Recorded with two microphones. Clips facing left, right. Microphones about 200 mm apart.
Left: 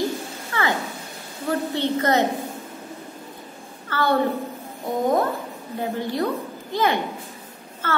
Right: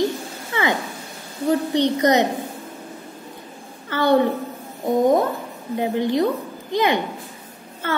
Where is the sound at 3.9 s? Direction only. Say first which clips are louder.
Right 4 dB; 20° right (ahead or behind).